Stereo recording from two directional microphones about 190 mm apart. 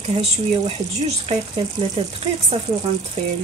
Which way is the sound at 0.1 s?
30° right (ahead or behind).